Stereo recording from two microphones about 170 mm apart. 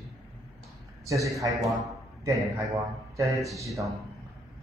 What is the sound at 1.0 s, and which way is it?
A man's voice, 20° right (ahead or behind).